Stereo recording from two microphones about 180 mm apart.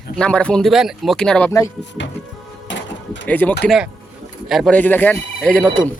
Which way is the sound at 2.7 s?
85° left.